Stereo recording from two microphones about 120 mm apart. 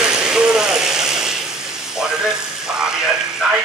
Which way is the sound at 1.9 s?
5° right (ahead or behind).